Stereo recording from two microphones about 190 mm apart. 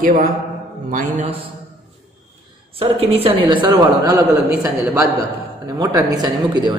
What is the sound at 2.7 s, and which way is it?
A man's voice, 30° right (ahead or behind).